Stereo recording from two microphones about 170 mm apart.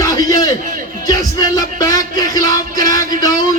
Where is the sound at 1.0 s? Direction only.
20° left (ahead or behind).